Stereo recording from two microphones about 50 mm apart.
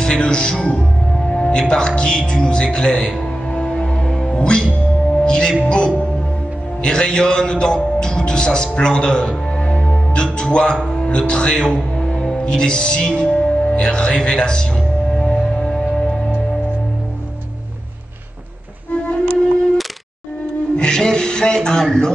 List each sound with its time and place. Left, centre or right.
0.0 s a man's voice: centre
3.5 s music: centre
4.4 s speech: centre
5.2 s music: centre
6.8 s a man's voice: centre
15.2 s music: centre
18.9 s music: left
20.7 s music: centre